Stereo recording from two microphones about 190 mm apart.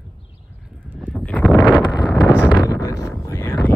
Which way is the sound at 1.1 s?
10° left (ahead or behind).